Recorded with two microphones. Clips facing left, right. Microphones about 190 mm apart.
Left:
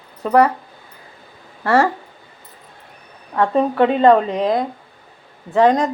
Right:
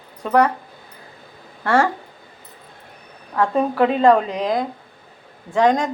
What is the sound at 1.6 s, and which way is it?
Speech, 5° left (ahead or behind).